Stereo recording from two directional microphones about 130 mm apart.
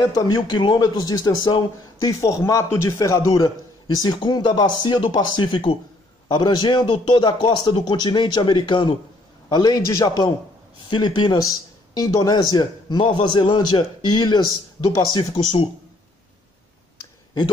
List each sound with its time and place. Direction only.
0.0 s a man's voice: 30° left (ahead or behind)
17.0 s clicking: 30° left (ahead or behind)